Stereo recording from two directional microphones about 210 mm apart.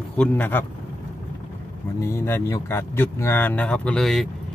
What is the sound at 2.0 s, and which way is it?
Speech, 10° left (ahead or behind).